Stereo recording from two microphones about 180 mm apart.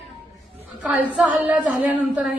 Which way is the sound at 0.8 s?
5° right (ahead or behind).